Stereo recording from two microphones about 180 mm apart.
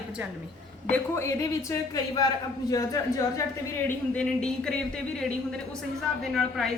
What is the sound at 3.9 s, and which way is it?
A woman's voice, 5° left (ahead or behind).